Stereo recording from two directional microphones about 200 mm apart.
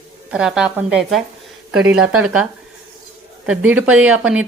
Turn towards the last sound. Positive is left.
turn(degrees=-5)  # may be behind; listen again after turning